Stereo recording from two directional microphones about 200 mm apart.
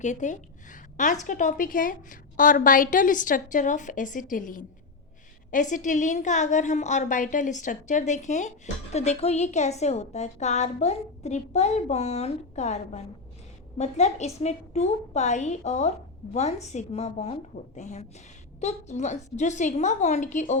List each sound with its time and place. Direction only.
0.0 s a woman's voice: 35° left (ahead or behind)